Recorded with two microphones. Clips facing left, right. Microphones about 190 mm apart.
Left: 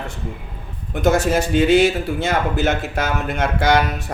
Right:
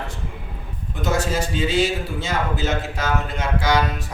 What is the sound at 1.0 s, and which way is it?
A man's voice, 60° left (ahead or behind).